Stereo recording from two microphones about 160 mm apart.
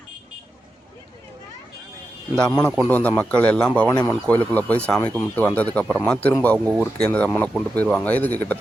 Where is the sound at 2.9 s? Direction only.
10° left (ahead or behind).